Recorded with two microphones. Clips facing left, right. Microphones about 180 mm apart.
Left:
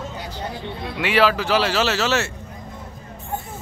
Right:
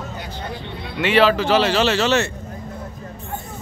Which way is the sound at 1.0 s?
5° left (ahead or behind).